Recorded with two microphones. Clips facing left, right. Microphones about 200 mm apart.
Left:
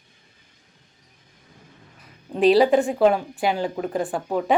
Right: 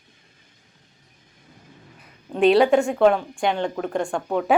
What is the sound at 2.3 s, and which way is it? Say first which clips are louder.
Speech: even; centre (ahead or behind).